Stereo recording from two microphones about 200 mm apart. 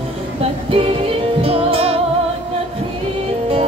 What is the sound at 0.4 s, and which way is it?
Music, 30° right (ahead or behind).